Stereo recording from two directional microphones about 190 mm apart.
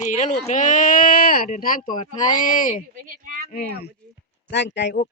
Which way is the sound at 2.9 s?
45° right (ahead or behind).